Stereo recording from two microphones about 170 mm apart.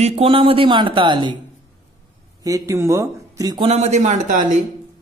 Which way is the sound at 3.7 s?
40° right (ahead or behind).